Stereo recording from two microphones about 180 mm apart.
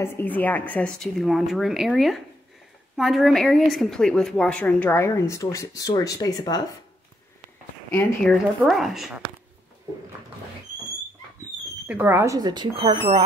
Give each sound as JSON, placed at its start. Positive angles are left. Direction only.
{"t": 0.0, "sound": "a woman's voice", "side_deg": 10}
{"t": 7.9, "sound": "speech", "side_deg": 10}
{"t": 11.9, "sound": "speech", "side_deg": -10}
{"t": 12.4, "sound": "speech", "side_deg": -25}